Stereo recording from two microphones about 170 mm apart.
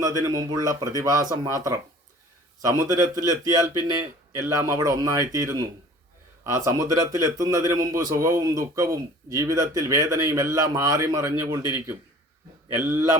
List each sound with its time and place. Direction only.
0.0 s a man's voice: 20° right (ahead or behind)
2.8 s a man's voice: 20° right (ahead or behind)
12.8 s speech: 15° right (ahead or behind)